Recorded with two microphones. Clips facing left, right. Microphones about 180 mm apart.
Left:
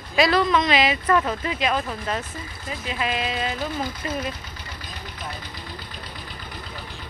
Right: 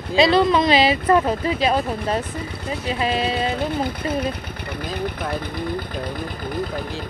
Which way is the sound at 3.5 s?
60° right (ahead or behind).